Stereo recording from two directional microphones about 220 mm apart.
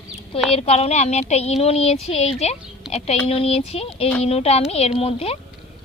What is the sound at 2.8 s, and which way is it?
Speech, 5° right (ahead or behind).